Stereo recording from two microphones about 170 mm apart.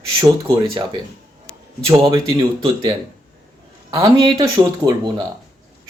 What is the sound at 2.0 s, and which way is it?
Speech, 25° right (ahead or behind).